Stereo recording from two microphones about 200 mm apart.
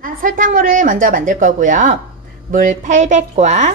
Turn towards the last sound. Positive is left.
turn(degrees=-35)  # may be behind; listen again after turning